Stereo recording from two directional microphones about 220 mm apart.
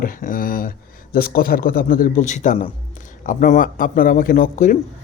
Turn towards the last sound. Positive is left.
turn(degrees=35)  # may be behind; listen again after turning